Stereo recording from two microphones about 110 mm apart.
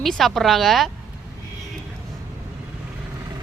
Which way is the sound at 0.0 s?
Centre (ahead or behind).